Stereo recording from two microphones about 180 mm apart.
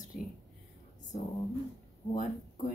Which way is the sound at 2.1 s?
45° left (ahead or behind).